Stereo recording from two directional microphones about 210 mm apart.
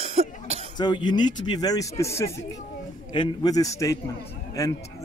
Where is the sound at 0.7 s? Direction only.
20° left (ahead or behind).